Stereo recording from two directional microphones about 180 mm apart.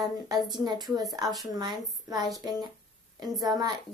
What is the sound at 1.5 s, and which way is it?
Speech, 20° right (ahead or behind).